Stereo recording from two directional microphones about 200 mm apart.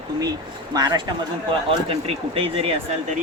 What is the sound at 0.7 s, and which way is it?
Speech, 20° right (ahead or behind).